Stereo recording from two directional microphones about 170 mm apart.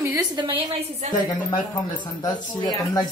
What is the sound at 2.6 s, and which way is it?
Speech, 25° left (ahead or behind).